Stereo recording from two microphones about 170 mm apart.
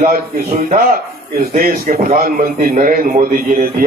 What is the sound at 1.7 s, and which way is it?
A man's voice, 45° right (ahead or behind).